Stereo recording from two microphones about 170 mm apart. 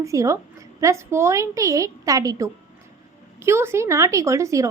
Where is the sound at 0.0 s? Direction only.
20° right (ahead or behind).